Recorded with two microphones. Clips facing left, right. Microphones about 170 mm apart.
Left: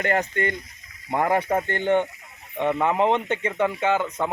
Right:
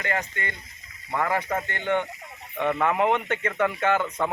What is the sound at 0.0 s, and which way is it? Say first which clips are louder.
Speech: left 6 dB; 45° left (ahead or behind).